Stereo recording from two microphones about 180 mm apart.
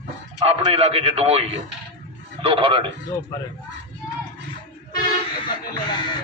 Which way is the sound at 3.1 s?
20° left (ahead or behind).